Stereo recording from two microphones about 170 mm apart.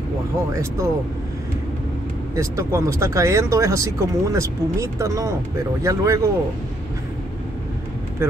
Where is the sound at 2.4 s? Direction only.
20° right (ahead or behind).